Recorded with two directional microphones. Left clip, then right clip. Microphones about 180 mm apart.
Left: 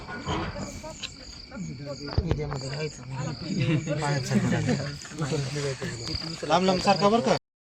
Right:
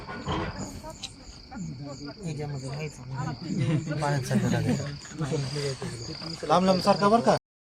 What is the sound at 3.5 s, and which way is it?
Speech, 5° right (ahead or behind).